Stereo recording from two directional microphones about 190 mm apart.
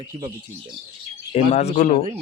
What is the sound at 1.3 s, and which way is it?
Speech, 35° left (ahead or behind).